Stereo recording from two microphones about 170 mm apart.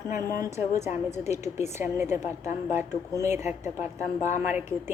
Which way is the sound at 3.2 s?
15° right (ahead or behind).